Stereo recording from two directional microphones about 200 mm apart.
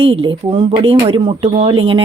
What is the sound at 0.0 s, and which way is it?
Speech, 25° right (ahead or behind).